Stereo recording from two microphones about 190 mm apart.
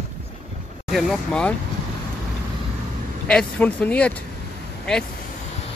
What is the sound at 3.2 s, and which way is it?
Speech, 5° left (ahead or behind).